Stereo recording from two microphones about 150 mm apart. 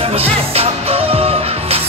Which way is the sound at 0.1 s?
40° right (ahead or behind).